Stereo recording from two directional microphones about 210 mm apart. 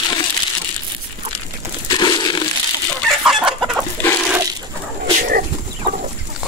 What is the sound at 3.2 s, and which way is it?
Chicken, 5° right (ahead or behind).